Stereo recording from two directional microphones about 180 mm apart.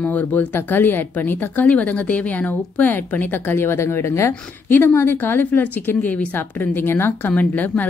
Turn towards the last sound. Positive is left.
turn(degrees=10)  # may be behind; listen again after turning